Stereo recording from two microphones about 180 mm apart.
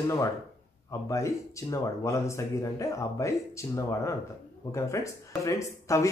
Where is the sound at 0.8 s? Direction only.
15° left (ahead or behind).